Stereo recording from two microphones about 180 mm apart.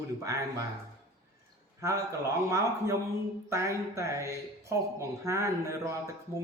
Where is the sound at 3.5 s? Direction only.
15° right (ahead or behind).